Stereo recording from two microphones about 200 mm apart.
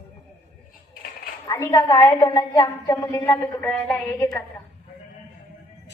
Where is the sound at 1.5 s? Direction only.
15° left (ahead or behind).